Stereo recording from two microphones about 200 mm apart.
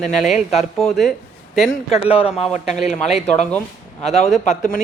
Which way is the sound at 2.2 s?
5° right (ahead or behind).